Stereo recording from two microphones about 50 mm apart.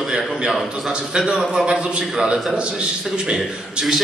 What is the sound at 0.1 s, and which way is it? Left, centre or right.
A man's voice, centre.